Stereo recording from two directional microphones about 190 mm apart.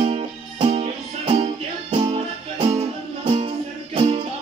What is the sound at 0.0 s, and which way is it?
Music, 35° right (ahead or behind).